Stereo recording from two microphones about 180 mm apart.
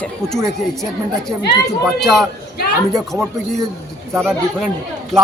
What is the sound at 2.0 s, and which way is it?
Speech, centre (ahead or behind).